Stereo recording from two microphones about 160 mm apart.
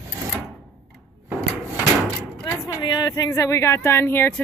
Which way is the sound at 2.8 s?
25° left (ahead or behind).